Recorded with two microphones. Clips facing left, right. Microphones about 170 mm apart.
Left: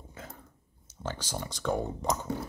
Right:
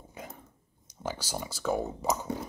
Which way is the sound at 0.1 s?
15° right (ahead or behind).